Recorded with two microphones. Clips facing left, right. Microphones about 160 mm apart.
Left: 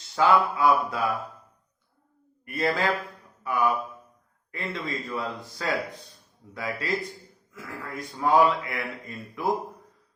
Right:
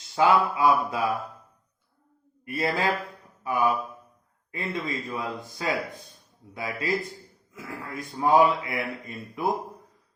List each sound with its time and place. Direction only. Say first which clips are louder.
0.2 s speech: even; 25° right (ahead or behind)
2.4 s speech: even; 15° right (ahead or behind)